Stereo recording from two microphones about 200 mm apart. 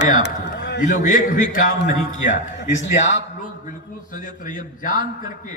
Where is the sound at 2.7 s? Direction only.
65° left (ahead or behind).